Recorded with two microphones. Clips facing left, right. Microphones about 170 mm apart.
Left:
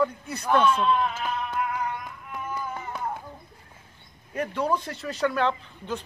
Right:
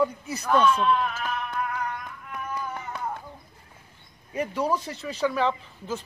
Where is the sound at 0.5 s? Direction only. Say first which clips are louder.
Even; 10° left (ahead or behind).